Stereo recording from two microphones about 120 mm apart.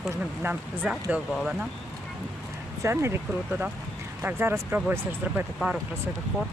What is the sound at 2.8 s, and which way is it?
Speech, 25° right (ahead or behind).